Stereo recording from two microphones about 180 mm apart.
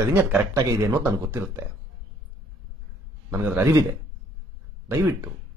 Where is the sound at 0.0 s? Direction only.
10° right (ahead or behind).